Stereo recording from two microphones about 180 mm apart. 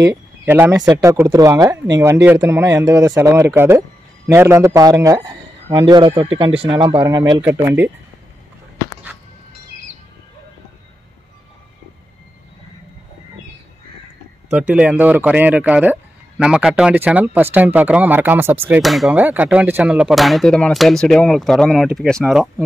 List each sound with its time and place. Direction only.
0.0 s a man's voice: 15° right (ahead or behind)
7.4 s speech: 15° right (ahead or behind)
14.5 s speech: 5° right (ahead or behind)
18.8 s speech: centre (ahead or behind)